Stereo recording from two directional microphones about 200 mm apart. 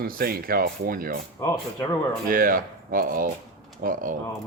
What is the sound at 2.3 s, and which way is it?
Speech, 45° right (ahead or behind).